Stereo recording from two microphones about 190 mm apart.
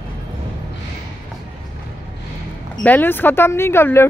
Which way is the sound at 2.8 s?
10° left (ahead or behind).